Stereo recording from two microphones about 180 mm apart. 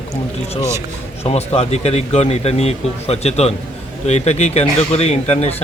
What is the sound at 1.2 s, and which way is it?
Speech, 35° left (ahead or behind).